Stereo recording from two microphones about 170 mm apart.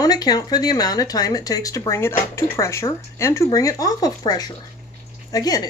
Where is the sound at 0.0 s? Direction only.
20° left (ahead or behind).